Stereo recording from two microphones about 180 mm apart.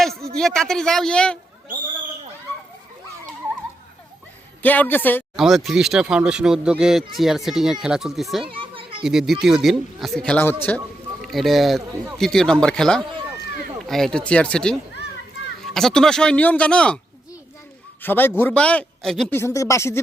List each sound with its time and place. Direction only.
0.3 s speech: 5° left (ahead or behind)
4.6 s a man's voice: 10° left (ahead or behind)
5.4 s speech: centre (ahead or behind)
8.5 s children playing: 30° right (ahead or behind)
9.0 s speech: centre (ahead or behind)
11.2 s speech: centre (ahead or behind)
18.0 s a man's voice: 10° left (ahead or behind)